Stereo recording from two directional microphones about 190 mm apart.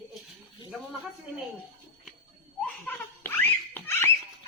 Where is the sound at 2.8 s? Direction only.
10° left (ahead or behind).